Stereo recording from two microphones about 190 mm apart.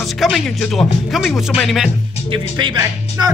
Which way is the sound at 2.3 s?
25° right (ahead or behind).